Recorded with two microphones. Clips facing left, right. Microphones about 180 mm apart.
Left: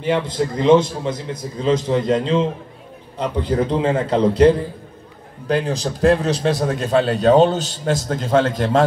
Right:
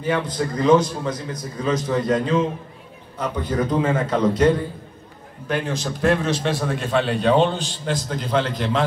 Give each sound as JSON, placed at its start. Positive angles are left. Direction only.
{"t": 0.0, "sound": "a man's voice", "side_deg": 25}